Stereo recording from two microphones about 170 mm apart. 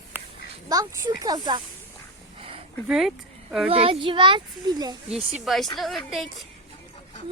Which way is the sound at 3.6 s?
35° right (ahead or behind).